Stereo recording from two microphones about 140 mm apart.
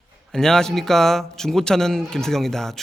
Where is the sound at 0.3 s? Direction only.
5° left (ahead or behind).